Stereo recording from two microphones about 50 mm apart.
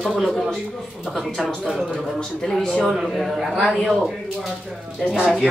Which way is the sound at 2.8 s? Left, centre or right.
Centre.